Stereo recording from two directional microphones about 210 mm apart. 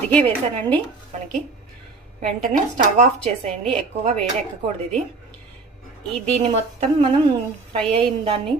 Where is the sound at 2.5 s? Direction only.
35° right (ahead or behind).